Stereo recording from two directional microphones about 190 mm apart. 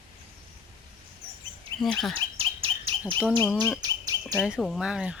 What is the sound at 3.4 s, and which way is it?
Speech, 5° left (ahead or behind).